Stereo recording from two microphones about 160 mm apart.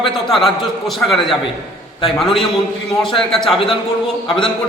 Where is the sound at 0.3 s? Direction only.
Centre (ahead or behind).